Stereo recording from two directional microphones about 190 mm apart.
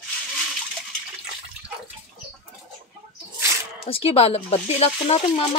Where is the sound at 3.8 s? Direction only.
30° left (ahead or behind).